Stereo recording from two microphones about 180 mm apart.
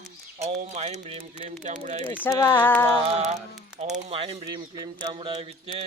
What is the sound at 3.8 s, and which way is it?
Speech, 40° right (ahead or behind).